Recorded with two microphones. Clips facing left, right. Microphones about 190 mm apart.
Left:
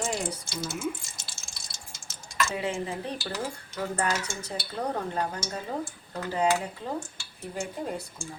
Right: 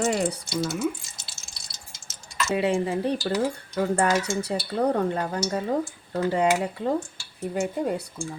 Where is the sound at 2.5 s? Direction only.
65° right (ahead or behind).